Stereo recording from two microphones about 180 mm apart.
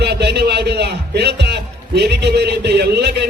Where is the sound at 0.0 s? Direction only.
65° right (ahead or behind).